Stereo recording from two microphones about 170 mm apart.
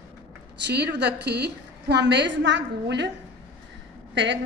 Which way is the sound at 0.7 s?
85° right.